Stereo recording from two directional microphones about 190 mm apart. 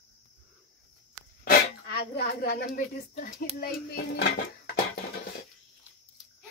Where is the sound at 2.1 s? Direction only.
55° left (ahead or behind).